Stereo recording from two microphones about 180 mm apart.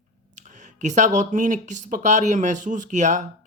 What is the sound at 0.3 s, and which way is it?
Speech, 45° right (ahead or behind).